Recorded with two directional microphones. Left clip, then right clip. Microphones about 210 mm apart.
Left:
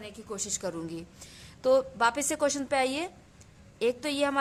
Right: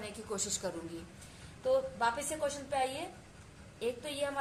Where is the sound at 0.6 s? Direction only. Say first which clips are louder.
Left 5 dB; 45° left (ahead or behind).